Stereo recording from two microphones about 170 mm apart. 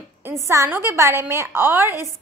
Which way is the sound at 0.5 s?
15° right (ahead or behind).